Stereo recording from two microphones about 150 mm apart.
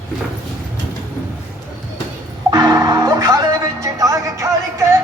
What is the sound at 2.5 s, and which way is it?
Music, 25° right (ahead or behind).